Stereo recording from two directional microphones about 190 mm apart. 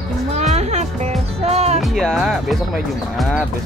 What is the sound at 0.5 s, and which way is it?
Music, 35° right (ahead or behind).